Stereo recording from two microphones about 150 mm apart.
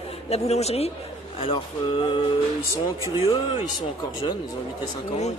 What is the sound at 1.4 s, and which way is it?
Speech, 30° left (ahead or behind).